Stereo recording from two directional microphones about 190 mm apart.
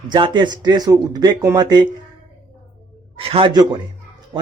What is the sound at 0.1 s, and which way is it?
Speech, 25° right (ahead or behind).